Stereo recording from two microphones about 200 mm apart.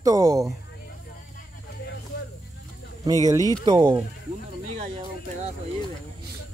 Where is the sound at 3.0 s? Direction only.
20° right (ahead or behind).